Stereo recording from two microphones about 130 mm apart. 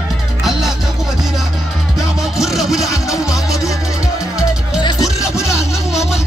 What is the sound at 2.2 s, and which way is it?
Music, 5° right (ahead or behind).